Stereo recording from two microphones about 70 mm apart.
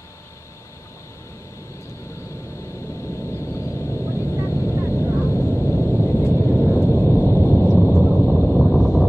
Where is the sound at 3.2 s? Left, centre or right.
Left.